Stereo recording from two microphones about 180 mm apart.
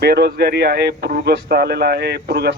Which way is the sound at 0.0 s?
65° right (ahead or behind).